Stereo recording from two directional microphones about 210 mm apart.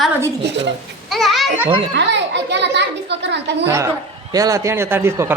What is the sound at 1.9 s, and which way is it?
A child's voice, 55° right (ahead or behind).